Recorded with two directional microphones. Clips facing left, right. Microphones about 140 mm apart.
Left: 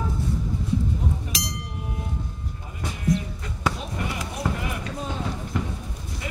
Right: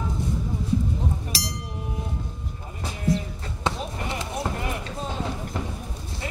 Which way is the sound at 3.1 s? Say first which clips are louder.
Even; 30° right (ahead or behind).